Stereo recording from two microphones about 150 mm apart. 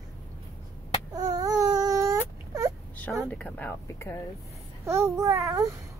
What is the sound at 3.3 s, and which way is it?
Speech, 10° left (ahead or behind).